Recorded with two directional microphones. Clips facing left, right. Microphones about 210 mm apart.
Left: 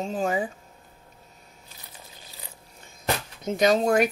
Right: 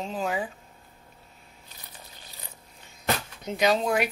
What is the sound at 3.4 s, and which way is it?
Speech, 45° left (ahead or behind).